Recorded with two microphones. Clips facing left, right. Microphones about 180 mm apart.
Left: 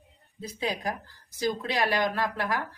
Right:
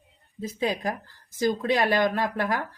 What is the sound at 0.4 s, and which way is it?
Speech, 45° right (ahead or behind).